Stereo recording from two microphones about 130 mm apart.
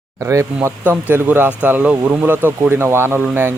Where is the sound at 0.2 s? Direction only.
25° right (ahead or behind).